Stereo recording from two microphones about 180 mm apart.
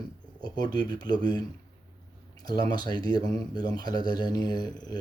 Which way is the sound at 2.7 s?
20° left (ahead or behind).